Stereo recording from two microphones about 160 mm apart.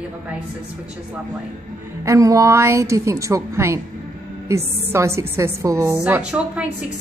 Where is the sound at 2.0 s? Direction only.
20° right (ahead or behind).